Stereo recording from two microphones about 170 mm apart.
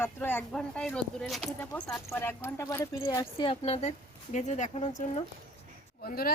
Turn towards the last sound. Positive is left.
turn(degrees=60)  # may be behind; listen again after turning